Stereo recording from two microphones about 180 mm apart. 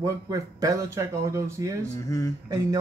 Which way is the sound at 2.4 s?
20° right (ahead or behind).